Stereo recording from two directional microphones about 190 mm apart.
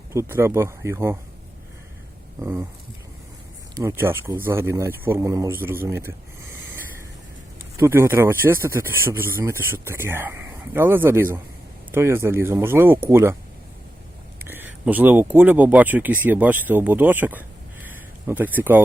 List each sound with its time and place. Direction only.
0.1 s speech: 15° right (ahead or behind)
2.4 s speech: 15° right (ahead or behind)
3.8 s a man's voice: 15° right (ahead or behind)
14.3 s speech: 10° right (ahead or behind)
17.8 s a sound: 10° right (ahead or behind)